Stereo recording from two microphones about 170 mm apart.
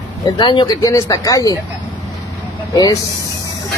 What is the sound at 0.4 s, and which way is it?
Speech, 25° left (ahead or behind).